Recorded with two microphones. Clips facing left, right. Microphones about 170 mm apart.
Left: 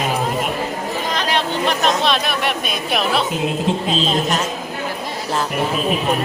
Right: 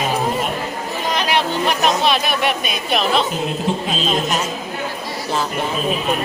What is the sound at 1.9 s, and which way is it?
Speech, 5° right (ahead or behind).